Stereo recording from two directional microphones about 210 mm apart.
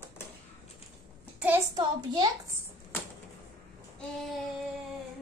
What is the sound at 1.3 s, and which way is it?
Hands, 10° right (ahead or behind).